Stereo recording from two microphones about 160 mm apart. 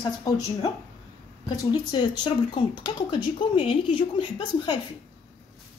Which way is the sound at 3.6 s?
35° left (ahead or behind).